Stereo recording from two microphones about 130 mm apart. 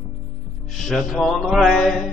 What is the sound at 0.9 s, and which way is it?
Mantra, centre (ahead or behind).